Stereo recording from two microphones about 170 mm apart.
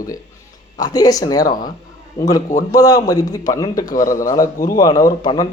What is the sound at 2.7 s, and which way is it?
A man's voice, 20° left (ahead or behind).